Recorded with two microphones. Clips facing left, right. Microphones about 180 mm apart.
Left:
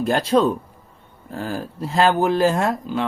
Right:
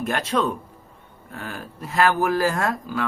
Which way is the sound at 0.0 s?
35° left (ahead or behind).